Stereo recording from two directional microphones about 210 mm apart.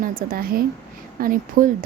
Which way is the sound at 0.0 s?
40° right (ahead or behind).